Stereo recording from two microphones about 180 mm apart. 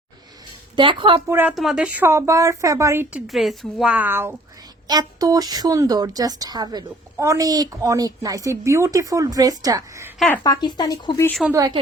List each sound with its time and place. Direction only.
0.8 s a woman's voice: 30° right (ahead or behind)
1.3 s a woman's voice: 10° right (ahead or behind)
10.2 s speech: 10° left (ahead or behind)
10.4 s speech: 20° left (ahead or behind)
11.5 s a woman's voice: 20° right (ahead or behind)